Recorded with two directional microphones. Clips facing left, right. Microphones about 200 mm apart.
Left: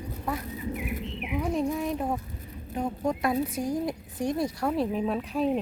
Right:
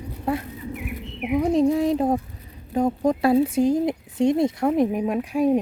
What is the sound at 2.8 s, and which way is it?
Speech, 40° right (ahead or behind).